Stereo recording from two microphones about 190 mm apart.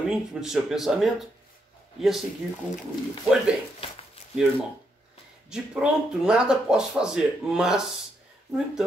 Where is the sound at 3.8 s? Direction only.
30° left (ahead or behind).